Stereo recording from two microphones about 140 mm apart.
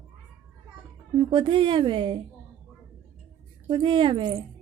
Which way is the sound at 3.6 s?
35° right (ahead or behind).